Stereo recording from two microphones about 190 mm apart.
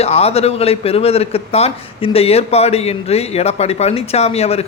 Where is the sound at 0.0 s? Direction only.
30° left (ahead or behind).